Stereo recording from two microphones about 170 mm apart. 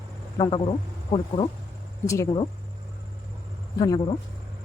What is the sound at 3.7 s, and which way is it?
Speech, 25° left (ahead or behind).